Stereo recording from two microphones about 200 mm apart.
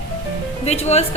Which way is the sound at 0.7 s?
35° left (ahead or behind).